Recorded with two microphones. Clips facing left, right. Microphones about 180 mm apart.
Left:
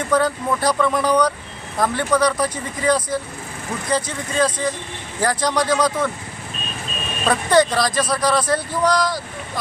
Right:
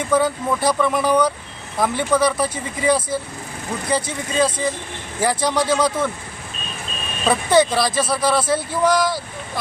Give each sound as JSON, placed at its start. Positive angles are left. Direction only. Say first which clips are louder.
{"t": 0.1, "sound": "speech", "louder": "even", "side_deg": -5}
{"t": 7.3, "sound": "speech", "louder": "even", "side_deg": -5}